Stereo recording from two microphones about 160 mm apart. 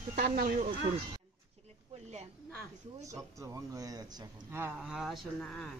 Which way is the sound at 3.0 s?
20° right (ahead or behind).